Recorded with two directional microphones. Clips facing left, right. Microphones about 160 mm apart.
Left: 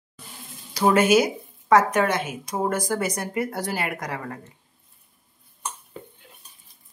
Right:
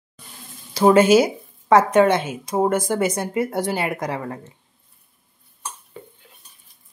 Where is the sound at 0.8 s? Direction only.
30° right (ahead or behind).